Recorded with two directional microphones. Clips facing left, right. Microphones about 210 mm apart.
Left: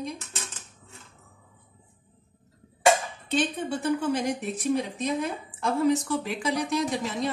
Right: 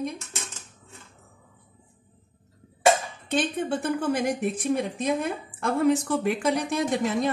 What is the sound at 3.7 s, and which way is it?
A woman's voice, 50° right (ahead or behind).